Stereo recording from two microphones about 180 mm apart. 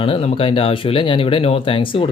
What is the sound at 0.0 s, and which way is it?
Speech, 35° left (ahead or behind).